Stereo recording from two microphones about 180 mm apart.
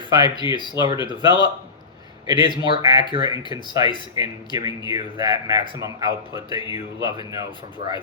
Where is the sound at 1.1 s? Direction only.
25° right (ahead or behind).